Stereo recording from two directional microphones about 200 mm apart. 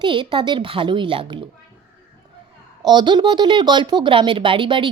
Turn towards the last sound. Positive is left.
turn(degrees=-25)  # may be behind; listen again after turning